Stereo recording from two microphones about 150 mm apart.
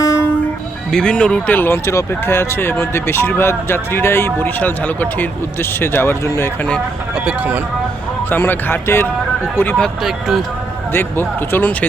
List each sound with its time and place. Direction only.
0.0 s music: 20° left (ahead or behind)
0.9 s speech: 5° left (ahead or behind)
7.3 s speech: 10° right (ahead or behind)
8.3 s speech: 15° left (ahead or behind); by 10.4 s centre (ahead or behind)
10.9 s speech: 15° left (ahead or behind)